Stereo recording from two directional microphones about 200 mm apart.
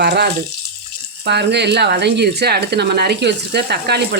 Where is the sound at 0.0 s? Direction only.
55° right (ahead or behind).